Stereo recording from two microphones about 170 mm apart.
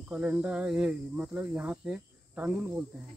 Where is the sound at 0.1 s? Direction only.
10° right (ahead or behind).